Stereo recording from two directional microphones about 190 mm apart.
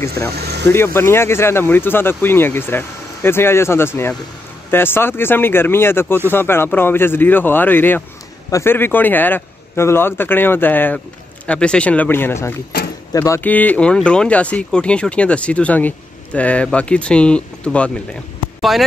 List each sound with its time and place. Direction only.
0.4 s vehicle: 60° right (ahead or behind)
0.7 s speech: 15° left (ahead or behind)